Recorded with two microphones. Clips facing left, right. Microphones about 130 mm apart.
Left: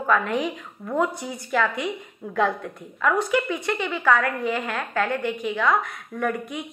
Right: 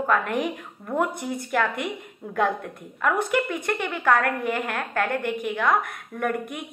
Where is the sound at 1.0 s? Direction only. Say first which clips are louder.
Even; 55° right (ahead or behind).